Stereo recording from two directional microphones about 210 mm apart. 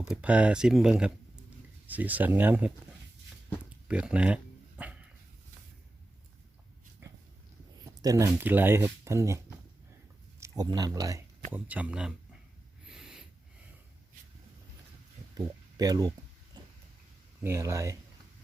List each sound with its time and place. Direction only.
0.1 s speech: 5° right (ahead or behind)
3.8 s speech: 5° right (ahead or behind)
4.8 s dog: 5° right (ahead or behind)
7.0 s dog: 10° right (ahead or behind)
7.9 s a sound: 15° right (ahead or behind)
8.3 s speech: 10° right (ahead or behind)
10.4 s speech: 15° right (ahead or behind)
12.9 s snort: 5° right (ahead or behind)
15.4 s speech: 15° right (ahead or behind)
17.4 s speech: 15° right (ahead or behind)